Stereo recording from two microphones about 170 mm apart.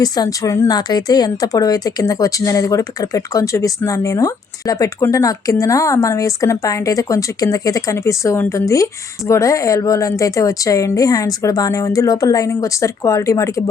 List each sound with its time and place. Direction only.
0.0 s speech: 20° left (ahead or behind)